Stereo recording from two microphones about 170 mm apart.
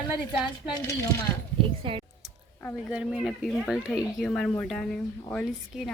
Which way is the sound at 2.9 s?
5° right (ahead or behind).